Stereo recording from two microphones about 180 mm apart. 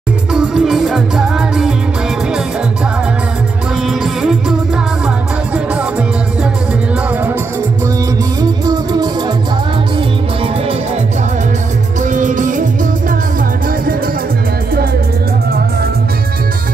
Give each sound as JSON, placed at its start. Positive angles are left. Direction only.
{"t": 0.3, "sound": "music", "side_deg": -5}
{"t": 4.0, "sound": "music", "side_deg": 0}
{"t": 8.4, "sound": "music", "side_deg": -20}
{"t": 12.0, "sound": "music", "side_deg": -45}